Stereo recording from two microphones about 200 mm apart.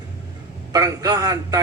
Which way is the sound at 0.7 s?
20° right (ahead or behind).